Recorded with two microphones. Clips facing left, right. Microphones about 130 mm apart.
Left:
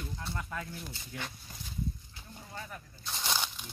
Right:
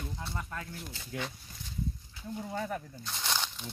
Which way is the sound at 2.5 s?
80° right.